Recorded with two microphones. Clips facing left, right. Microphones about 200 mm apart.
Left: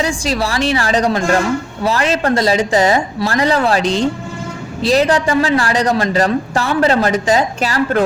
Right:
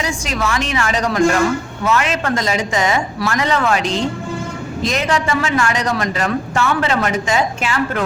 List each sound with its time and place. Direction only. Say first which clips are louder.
0.0 s a man's voice: left 4 dB; 35° left (ahead or behind)